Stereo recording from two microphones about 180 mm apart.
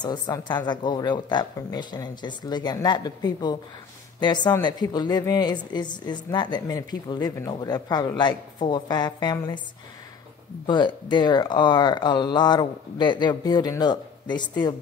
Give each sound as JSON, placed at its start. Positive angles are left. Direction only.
{"t": 0.0, "sound": "speech", "side_deg": 25}
{"t": 10.7, "sound": "speech", "side_deg": 25}